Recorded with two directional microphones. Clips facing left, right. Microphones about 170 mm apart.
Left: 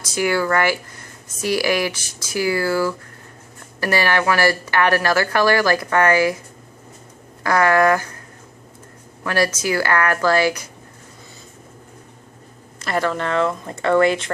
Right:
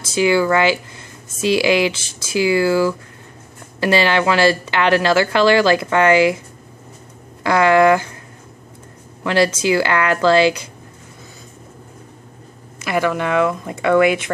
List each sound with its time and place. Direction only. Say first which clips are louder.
0.1 s a woman's voice: right 4 dB; 20° right (ahead or behind)
7.4 s a woman's voice: right 3 dB; 25° right (ahead or behind)
9.2 s a woman's voice: right 4 dB; 25° right (ahead or behind)
12.8 s speech: right 3 dB; 10° right (ahead or behind)